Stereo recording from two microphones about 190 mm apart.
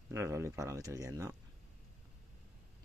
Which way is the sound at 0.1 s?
15° right (ahead or behind).